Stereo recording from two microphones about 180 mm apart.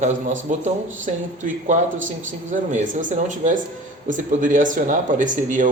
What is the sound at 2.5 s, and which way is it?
A man's voice, 45° right (ahead or behind).